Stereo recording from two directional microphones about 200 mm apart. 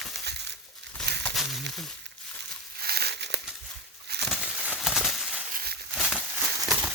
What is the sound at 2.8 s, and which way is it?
Crumpling, 50° right (ahead or behind).